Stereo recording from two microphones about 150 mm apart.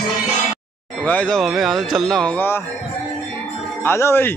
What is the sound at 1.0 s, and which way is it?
Speech, 10° left (ahead or behind).